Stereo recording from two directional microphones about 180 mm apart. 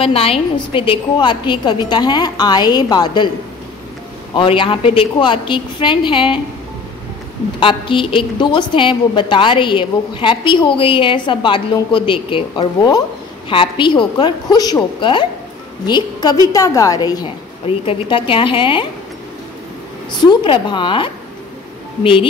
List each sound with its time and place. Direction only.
0.0 s a woman's voice: 30° left (ahead or behind)
4.4 s a woman's voice: 30° left (ahead or behind)
7.6 s a woman's voice: 30° left (ahead or behind)
17.6 s a woman's voice: 30° left (ahead or behind)
20.2 s a woman's voice: 25° left (ahead or behind)